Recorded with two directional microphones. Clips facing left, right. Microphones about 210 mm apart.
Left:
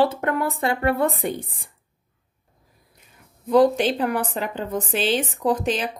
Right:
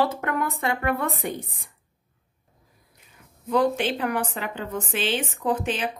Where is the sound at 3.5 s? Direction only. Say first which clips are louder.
Left 5 dB; 35° left (ahead or behind).